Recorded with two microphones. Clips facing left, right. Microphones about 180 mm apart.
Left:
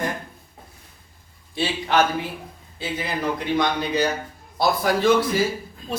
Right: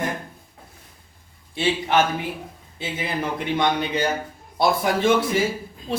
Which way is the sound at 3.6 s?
25° right (ahead or behind).